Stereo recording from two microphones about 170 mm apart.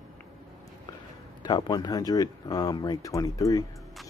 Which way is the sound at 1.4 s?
25° left (ahead or behind).